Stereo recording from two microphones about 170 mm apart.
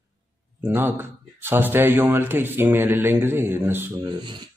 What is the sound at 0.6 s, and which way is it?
Speech, 15° right (ahead or behind).